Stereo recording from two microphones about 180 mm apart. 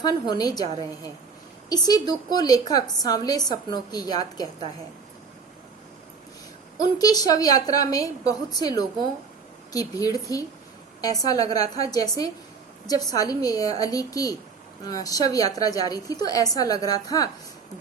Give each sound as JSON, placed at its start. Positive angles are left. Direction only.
{"t": 0.0, "sound": "a woman's voice", "side_deg": 20}
{"t": 1.7, "sound": "a woman's voice", "side_deg": 20}
{"t": 6.7, "sound": "a woman's voice", "side_deg": 20}